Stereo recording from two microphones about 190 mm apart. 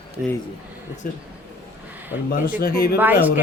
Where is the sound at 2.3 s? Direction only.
50° left (ahead or behind).